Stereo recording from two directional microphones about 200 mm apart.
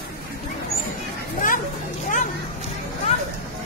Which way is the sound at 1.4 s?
40° left (ahead or behind).